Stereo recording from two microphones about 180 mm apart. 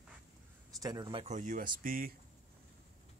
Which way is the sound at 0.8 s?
25° right (ahead or behind).